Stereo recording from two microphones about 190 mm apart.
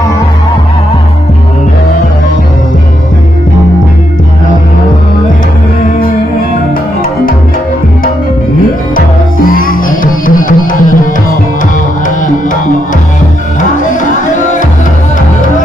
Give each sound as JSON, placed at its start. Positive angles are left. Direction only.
{"t": 8.9, "sound": "music", "side_deg": 45}
{"t": 13.6, "sound": "music", "side_deg": 40}